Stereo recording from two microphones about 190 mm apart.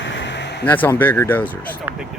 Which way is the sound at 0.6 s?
10° left (ahead or behind).